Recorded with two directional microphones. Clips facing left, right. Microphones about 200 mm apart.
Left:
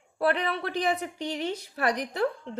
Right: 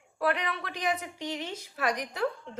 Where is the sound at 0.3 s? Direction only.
35° left (ahead or behind).